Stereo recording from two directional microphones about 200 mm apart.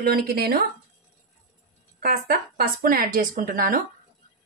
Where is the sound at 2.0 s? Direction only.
50° right (ahead or behind).